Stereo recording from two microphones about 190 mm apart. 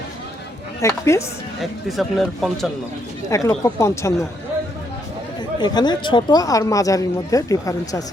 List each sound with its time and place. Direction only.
0.8 s speech: 15° left (ahead or behind)
1.9 s speech: centre (ahead or behind)
3.2 s speech: 15° left (ahead or behind)
5.5 s speech: 25° left (ahead or behind)